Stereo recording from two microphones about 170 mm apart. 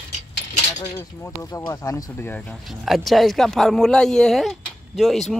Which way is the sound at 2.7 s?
Centre (ahead or behind).